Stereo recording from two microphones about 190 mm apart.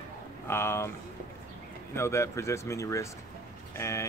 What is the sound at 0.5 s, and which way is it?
Speech, 15° left (ahead or behind).